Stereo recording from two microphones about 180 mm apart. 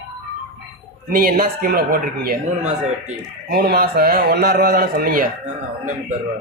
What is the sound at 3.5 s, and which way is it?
A man's voice, 55° right (ahead or behind).